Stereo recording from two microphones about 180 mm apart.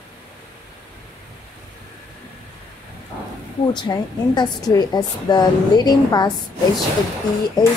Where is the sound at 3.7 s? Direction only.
25° left (ahead or behind).